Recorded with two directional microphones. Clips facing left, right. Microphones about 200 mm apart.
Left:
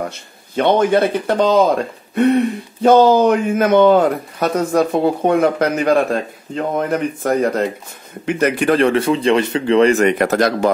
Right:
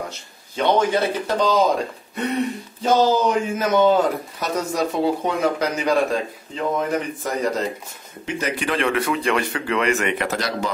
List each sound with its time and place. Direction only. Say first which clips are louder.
0.6 s speech: left 5 dB; 55° left (ahead or behind)
2.8 s speech: left 7 dB; 60° left (ahead or behind)